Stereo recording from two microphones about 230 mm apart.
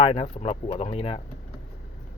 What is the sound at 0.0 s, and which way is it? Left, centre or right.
Speech, left.